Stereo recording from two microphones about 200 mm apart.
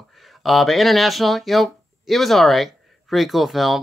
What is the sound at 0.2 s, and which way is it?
Speech, centre (ahead or behind).